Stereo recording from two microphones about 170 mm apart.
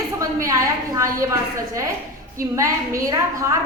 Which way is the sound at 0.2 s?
20° right (ahead or behind).